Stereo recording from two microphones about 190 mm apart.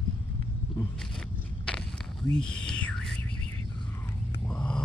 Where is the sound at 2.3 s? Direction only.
5° left (ahead or behind).